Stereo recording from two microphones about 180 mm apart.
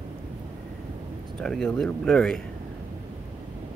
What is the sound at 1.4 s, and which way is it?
Speech, 5° left (ahead or behind).